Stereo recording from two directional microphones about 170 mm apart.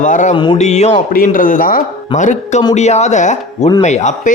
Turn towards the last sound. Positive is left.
turn(degrees=45)  # may be behind; listen again after turning